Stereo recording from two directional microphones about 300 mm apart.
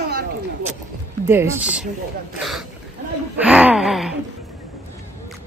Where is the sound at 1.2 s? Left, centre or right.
Centre.